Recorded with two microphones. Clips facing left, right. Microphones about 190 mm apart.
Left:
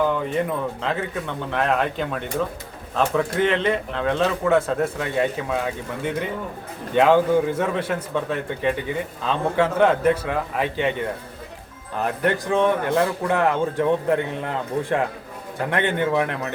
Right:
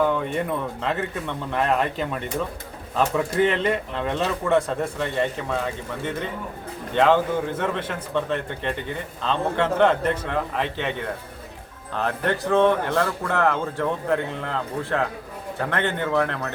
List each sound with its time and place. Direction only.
0.0 s a man's voice: centre (ahead or behind)
11.9 s a man's voice: 15° left (ahead or behind)